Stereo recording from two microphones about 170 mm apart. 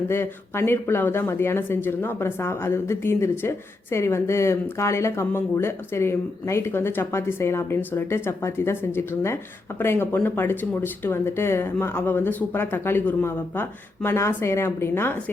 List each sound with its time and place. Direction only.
0.1 s speech: 15° left (ahead or behind)